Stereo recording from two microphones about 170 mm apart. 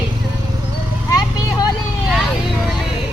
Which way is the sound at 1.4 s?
25° left (ahead or behind).